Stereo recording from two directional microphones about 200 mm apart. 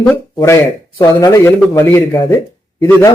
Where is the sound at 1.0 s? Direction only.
15° left (ahead or behind).